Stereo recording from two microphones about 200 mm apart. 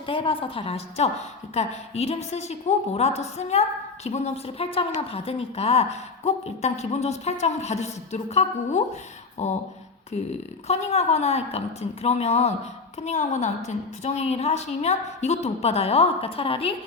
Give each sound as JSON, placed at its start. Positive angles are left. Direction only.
{"t": 0.0, "sound": "a woman's voice", "side_deg": 30}
{"t": 10.7, "sound": "a woman's voice", "side_deg": 30}